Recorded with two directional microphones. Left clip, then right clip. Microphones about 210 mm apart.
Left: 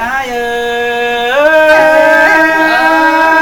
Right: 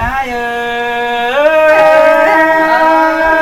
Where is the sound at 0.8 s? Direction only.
5° left (ahead or behind).